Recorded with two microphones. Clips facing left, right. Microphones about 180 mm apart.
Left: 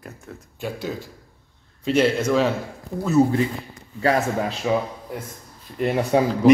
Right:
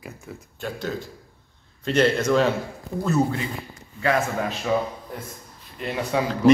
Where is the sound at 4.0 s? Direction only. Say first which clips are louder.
Left 2 dB; 35° left (ahead or behind).